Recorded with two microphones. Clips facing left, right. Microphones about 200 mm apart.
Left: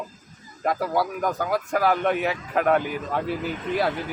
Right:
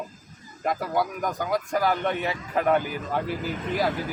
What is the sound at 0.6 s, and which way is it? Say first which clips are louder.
Speech: left 2 dB; centre (ahead or behind).